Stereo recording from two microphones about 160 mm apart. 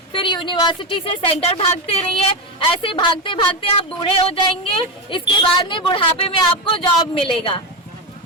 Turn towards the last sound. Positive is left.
turn(degrees=35)  # may be behind; listen again after turning